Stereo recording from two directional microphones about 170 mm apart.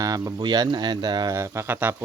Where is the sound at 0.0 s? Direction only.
20° right (ahead or behind).